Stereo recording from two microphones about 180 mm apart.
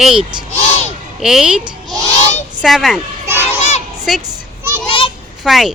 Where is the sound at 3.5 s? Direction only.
40° left (ahead or behind).